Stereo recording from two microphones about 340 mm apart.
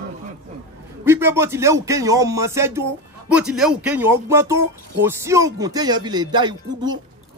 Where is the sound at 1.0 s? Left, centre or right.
Centre.